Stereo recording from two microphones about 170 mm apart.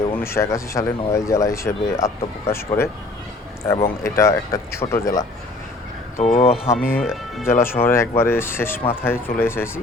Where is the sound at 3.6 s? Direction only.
15° left (ahead or behind).